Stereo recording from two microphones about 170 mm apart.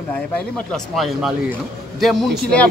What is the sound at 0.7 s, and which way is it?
A man's voice, centre (ahead or behind).